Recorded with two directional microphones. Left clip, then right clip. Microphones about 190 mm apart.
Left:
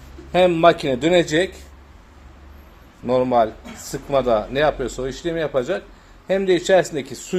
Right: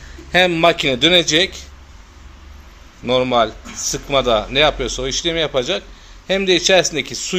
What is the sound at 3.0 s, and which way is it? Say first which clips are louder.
A man's voice: right 2 dB; 5° left (ahead or behind).